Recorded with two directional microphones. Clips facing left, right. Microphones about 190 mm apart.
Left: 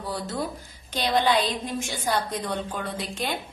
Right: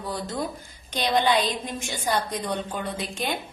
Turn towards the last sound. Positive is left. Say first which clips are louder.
# right 1 dB
turn(degrees=0)  # may be behind; listen again after turning